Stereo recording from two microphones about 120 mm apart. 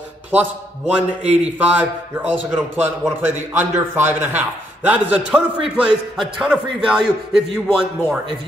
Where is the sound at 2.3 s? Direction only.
15° right (ahead or behind).